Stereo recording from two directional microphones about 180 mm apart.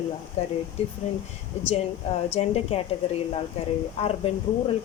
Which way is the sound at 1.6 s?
35° left (ahead or behind).